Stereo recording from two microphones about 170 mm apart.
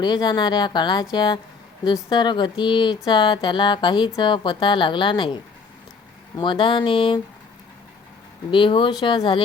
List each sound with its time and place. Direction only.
0.0 s a woman's voice: 25° left (ahead or behind)
8.4 s a woman's voice: 30° left (ahead or behind)